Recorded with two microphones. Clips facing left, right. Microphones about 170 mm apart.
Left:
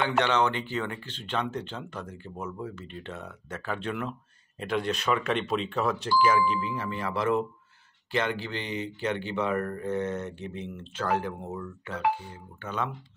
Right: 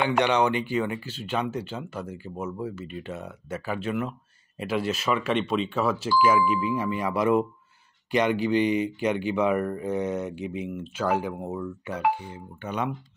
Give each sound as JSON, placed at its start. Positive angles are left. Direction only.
{"t": 0.0, "sound": "speech", "side_deg": -15}